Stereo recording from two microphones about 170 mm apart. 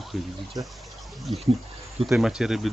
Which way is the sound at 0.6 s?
20° right (ahead or behind).